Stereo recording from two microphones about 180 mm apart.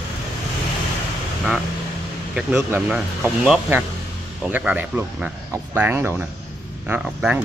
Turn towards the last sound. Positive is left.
turn(degrees=-10)  # may be behind; listen again after turning